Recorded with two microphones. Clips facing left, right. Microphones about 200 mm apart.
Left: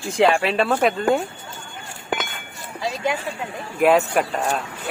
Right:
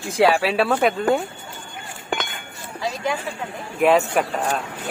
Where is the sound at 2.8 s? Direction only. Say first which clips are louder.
Left 1 dB; 20° left (ahead or behind).